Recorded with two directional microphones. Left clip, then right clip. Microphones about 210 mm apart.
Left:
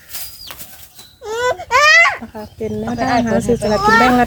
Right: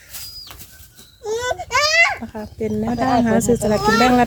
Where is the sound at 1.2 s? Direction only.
5° left (ahead or behind).